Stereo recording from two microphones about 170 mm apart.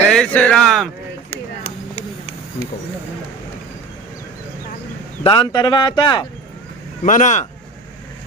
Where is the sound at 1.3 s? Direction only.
40° left (ahead or behind).